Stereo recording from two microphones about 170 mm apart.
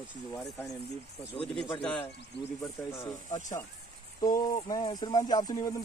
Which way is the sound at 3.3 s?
45° left (ahead or behind).